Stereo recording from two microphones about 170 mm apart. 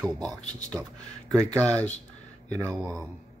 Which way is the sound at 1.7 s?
10° left (ahead or behind).